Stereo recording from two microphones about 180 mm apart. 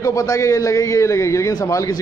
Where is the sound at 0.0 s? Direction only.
20° left (ahead or behind).